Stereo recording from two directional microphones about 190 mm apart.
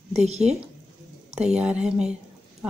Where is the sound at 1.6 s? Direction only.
5° right (ahead or behind).